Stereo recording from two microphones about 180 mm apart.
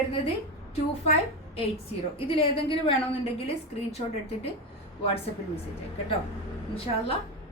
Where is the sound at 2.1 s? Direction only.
30° left (ahead or behind).